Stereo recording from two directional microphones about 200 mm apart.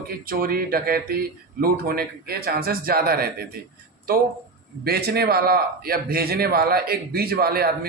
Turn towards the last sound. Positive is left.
turn(degrees=-50)  # may be behind; listen again after turning